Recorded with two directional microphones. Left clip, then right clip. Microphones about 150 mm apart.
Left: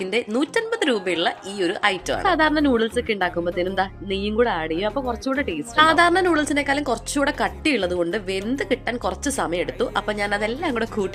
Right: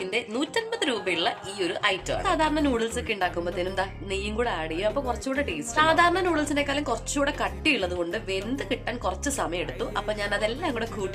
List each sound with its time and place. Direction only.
0.1 s a woman's voice: 35° left (ahead or behind)